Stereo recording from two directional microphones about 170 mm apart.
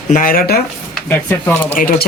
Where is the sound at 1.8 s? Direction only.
55° left (ahead or behind).